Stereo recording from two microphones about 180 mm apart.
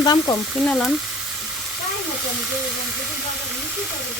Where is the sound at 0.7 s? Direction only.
5° left (ahead or behind).